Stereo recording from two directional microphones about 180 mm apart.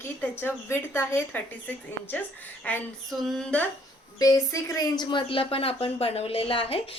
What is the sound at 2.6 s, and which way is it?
A woman's voice, 5° left (ahead or behind).